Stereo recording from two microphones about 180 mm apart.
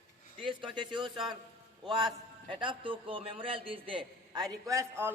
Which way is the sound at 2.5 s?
30° right (ahead or behind).